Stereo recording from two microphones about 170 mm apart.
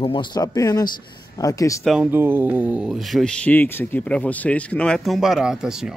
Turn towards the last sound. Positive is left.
turn(degrees=-5)  # may be behind; listen again after turning